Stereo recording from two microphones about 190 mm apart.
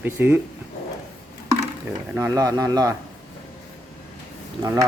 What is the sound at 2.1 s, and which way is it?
Speech, 15° right (ahead or behind).